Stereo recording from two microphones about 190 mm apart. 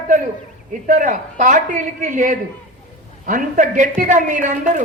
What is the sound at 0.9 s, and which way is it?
A man's voice, 45° right (ahead or behind).